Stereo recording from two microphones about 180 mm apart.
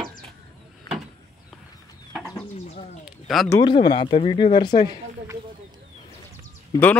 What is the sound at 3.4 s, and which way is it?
Speech, 25° left (ahead or behind).